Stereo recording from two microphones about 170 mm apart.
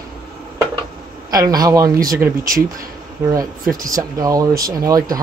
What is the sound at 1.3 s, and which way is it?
Speech, 20° right (ahead or behind).